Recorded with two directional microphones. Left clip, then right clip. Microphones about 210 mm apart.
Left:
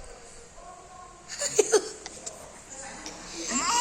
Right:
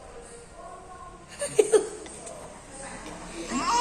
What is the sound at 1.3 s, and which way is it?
Laughter, 25° left (ahead or behind).